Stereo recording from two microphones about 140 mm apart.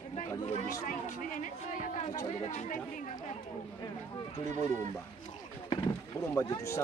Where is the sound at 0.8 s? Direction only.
65° left (ahead or behind).